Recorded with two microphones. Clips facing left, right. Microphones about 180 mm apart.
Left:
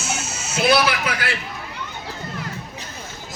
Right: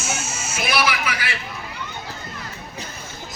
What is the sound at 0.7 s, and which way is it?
Speech, 60° left (ahead or behind).